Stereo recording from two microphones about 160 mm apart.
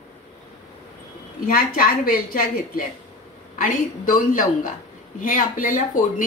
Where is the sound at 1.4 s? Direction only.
65° left (ahead or behind).